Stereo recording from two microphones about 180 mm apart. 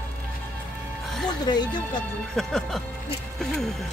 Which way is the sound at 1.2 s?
25° left (ahead or behind).